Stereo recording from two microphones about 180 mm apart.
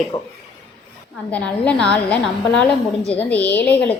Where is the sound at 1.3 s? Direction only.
5° left (ahead or behind).